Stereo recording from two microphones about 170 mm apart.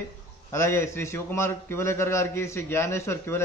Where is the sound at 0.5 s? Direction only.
15° left (ahead or behind).